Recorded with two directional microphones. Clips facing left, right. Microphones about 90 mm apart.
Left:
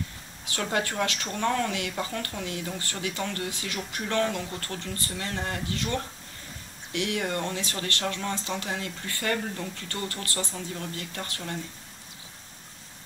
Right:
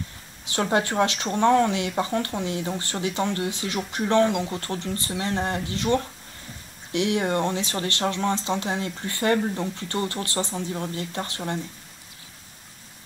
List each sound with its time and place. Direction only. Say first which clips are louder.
0.5 s speech: right 6 dB; 25° right (ahead or behind)